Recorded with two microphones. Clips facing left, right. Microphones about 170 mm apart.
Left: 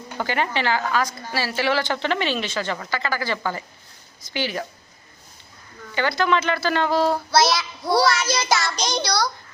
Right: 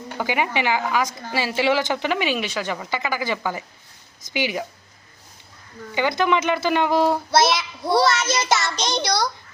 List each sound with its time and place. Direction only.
0.2 s speech: 10° right (ahead or behind)
5.9 s speech: 15° right (ahead or behind)
8.0 s child singing: 25° right (ahead or behind)